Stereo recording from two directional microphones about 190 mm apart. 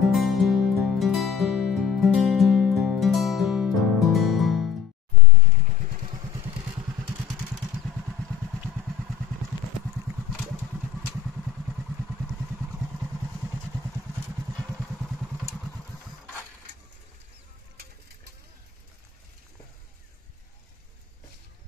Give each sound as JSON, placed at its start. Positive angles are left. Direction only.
{"t": 0.1, "sound": "music", "side_deg": 0}
{"t": 5.5, "sound": "vehicle", "side_deg": -40}
{"t": 6.0, "sound": "vehicle", "side_deg": -25}
{"t": 7.1, "sound": "vehicle", "side_deg": -5}
{"t": 11.0, "sound": "vehicle", "side_deg": 0}
{"t": 14.5, "sound": "vehicle", "side_deg": 5}